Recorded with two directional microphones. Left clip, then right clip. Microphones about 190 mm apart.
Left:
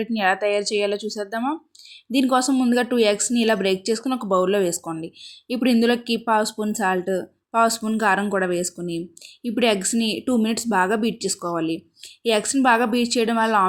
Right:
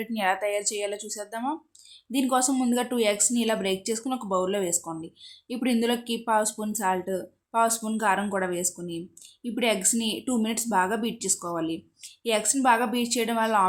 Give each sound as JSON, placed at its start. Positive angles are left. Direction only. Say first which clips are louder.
{"t": 0.0, "sound": "speech", "louder": "left 5 dB", "side_deg": 25}